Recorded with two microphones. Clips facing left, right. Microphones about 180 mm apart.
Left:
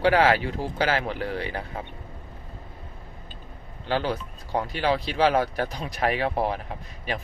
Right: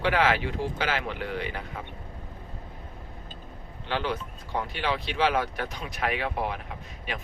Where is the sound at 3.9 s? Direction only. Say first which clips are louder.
Left 3 dB; 40° left (ahead or behind).